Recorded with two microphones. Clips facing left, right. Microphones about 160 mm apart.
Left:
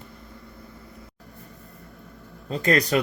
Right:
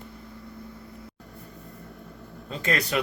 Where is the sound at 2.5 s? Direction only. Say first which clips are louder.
Left 6 dB; 40° left (ahead or behind).